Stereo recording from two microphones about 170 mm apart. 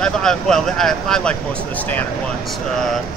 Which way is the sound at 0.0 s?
5° left (ahead or behind).